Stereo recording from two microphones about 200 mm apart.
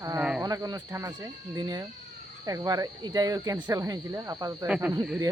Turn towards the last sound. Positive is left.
turn(degrees=-10)  # may be behind; listen again after turning